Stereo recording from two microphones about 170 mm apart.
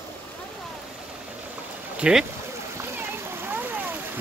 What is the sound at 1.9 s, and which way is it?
Speech, 5° right (ahead or behind).